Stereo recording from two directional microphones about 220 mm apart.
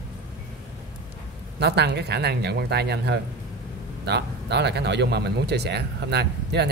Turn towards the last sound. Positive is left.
turn(degrees=-50)  # may be behind; listen again after turning